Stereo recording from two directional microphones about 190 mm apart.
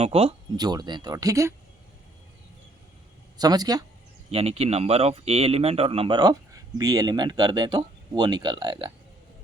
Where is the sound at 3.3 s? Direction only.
20° right (ahead or behind).